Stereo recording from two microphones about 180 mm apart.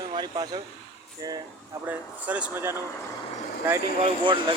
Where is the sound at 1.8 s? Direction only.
5° right (ahead or behind).